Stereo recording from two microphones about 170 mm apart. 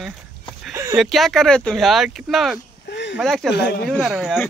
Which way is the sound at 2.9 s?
90° left.